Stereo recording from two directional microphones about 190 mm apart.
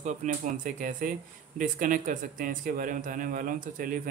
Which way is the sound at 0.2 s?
40° right (ahead or behind).